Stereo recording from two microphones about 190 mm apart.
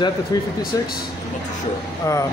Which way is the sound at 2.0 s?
15° left (ahead or behind).